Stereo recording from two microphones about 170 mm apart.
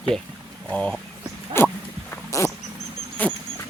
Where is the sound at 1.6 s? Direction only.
15° left (ahead or behind).